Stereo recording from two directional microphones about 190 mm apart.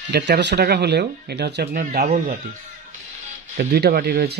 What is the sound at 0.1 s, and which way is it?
Speech, 65° right (ahead or behind).